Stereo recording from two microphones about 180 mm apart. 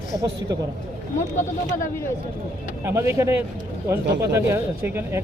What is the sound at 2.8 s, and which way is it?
Speech, 15° right (ahead or behind).